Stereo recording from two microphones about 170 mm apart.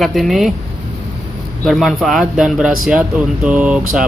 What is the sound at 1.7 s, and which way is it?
Speech, centre (ahead or behind).